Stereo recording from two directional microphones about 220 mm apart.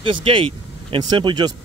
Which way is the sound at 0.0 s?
25° right (ahead or behind).